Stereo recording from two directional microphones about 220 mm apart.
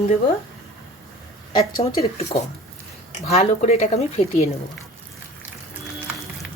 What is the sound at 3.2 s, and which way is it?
Speech, 30° left (ahead or behind).